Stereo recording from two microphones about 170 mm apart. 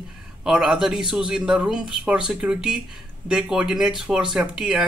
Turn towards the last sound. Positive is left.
turn(degrees=-5)  # may be behind; listen again after turning